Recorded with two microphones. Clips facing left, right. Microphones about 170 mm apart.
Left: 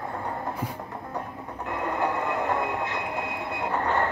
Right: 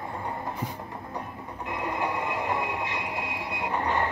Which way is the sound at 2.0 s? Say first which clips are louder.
Left 4 dB; 45° left (ahead or behind).